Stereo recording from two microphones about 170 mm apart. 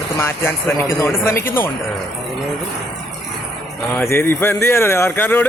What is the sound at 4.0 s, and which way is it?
Speech, 15° left (ahead or behind).